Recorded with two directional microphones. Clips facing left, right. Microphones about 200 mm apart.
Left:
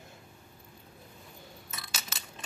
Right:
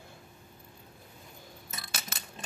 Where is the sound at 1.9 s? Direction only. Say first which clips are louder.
Right 1 dB; 55° right (ahead or behind).